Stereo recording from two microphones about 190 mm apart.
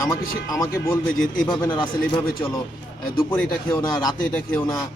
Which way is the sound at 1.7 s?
25° left (ahead or behind).